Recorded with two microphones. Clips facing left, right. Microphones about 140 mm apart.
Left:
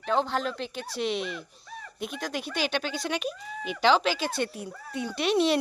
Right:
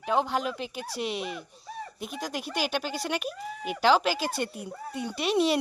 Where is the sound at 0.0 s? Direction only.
10° right (ahead or behind).